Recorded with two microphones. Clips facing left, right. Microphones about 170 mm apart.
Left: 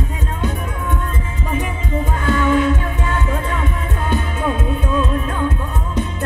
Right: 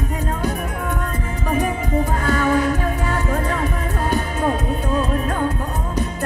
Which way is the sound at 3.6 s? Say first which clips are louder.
Right 1 dB; 40° right (ahead or behind).